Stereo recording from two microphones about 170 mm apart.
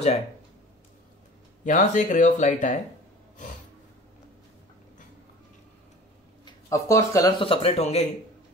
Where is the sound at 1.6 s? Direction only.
45° left (ahead or behind).